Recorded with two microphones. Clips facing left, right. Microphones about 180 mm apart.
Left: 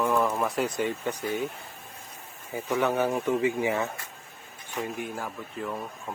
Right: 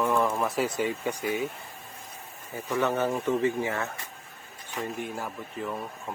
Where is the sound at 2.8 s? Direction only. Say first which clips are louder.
Even; 10° left (ahead or behind).